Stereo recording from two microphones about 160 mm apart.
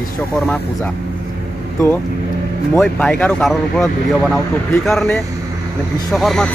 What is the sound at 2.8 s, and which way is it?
Speech, 5° left (ahead or behind).